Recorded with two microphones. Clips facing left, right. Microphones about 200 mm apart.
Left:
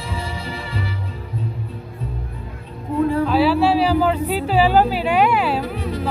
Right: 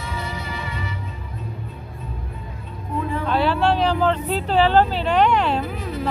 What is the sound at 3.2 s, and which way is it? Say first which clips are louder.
Speech: even; 5° left (ahead or behind).